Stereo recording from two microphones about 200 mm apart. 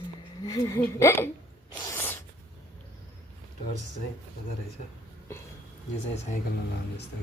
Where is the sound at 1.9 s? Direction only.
10° left (ahead or behind).